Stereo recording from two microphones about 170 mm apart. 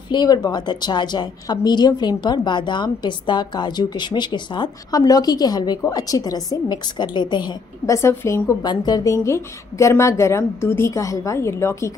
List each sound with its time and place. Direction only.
0.1 s a woman's voice: 25° left (ahead or behind)